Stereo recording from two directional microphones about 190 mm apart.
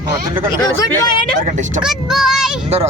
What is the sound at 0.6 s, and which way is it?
Speech, 20° left (ahead or behind).